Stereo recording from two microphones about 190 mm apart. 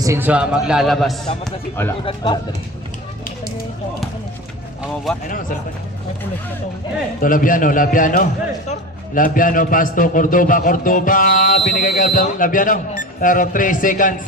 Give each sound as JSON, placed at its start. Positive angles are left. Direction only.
{"t": 0.0, "sound": "a man's voice", "side_deg": -10}
{"t": 1.5, "sound": "speech", "side_deg": 10}
{"t": 2.0, "sound": "speech", "side_deg": 25}
{"t": 7.2, "sound": "a man's voice", "side_deg": 45}